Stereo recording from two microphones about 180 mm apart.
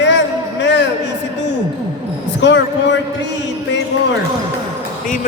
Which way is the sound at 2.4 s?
80° left.